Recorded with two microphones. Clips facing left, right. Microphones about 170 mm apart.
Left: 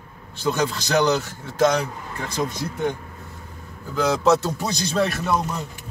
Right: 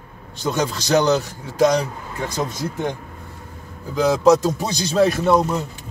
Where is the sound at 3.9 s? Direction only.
15° right (ahead or behind).